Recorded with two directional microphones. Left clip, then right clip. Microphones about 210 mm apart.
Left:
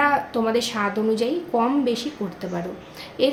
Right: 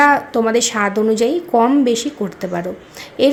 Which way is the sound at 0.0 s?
35° right (ahead or behind).